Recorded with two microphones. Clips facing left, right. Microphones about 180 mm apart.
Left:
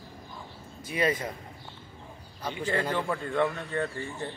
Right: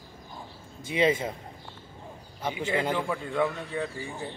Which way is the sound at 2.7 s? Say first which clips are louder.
Right 1 dB; 10° right (ahead or behind).